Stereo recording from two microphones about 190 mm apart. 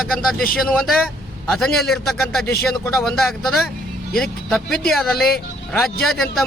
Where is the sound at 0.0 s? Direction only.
Centre (ahead or behind).